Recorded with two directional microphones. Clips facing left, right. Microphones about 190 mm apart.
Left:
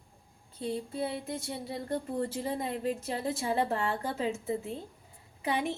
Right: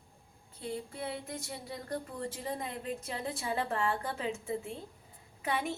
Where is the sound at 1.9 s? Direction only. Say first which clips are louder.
Left 6 dB; 35° left (ahead or behind).